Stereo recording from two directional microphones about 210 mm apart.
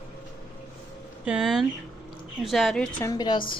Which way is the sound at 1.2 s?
5° right (ahead or behind).